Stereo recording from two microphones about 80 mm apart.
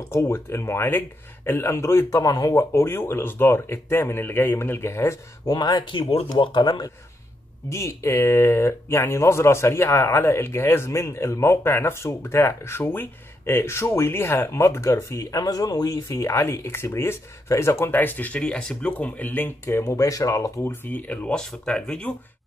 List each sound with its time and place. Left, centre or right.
0.1 s speech: left
2.2 s speech: left
5.5 s speech: left
7.7 s speech: left
20.6 s speech: left